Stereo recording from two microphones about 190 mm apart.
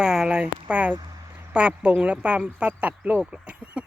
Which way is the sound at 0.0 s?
5° right (ahead or behind).